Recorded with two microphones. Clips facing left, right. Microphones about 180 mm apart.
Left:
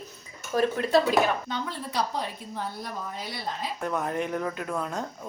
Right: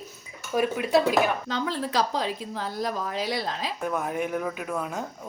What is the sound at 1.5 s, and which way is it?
A woman's voice, 90° right.